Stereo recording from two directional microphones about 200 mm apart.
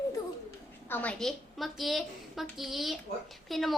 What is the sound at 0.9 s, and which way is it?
A woman's voice, 10° left (ahead or behind).